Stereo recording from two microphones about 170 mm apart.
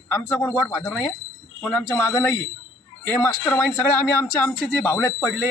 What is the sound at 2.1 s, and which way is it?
Speech, 15° left (ahead or behind).